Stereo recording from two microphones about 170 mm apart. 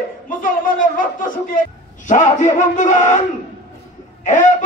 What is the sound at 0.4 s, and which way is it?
A man's voice, 55° left (ahead or behind).